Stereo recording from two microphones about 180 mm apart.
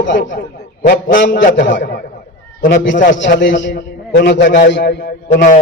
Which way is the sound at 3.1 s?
85° left.